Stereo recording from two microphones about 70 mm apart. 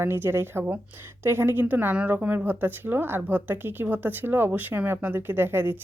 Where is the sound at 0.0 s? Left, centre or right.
Right.